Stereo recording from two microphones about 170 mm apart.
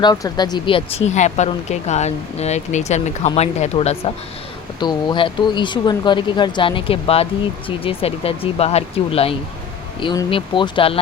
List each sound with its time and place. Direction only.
0.0 s speech: 25° left (ahead or behind)
4.8 s speech: 25° left (ahead or behind)